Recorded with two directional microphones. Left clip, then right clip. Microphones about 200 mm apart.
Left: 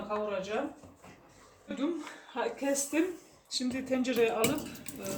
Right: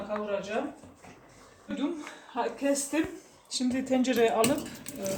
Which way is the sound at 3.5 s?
25° right (ahead or behind).